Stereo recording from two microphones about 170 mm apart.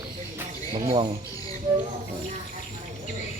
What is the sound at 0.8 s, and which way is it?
Speech, 30° right (ahead or behind).